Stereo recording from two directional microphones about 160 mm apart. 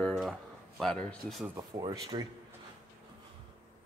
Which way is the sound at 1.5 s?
25° right (ahead or behind).